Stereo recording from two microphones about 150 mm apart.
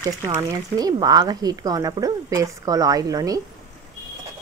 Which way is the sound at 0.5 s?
25° right (ahead or behind).